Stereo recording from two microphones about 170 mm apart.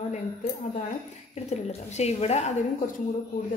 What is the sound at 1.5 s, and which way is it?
A woman's voice, 40° left (ahead or behind).